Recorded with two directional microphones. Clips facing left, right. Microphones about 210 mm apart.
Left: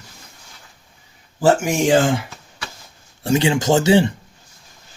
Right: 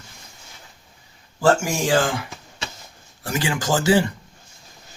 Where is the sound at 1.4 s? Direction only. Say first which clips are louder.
Left 3 dB; 20° left (ahead or behind).